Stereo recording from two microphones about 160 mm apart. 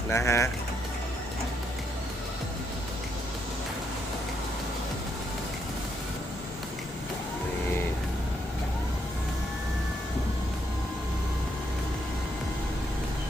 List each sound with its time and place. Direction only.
0.1 s speech: 15° left (ahead or behind)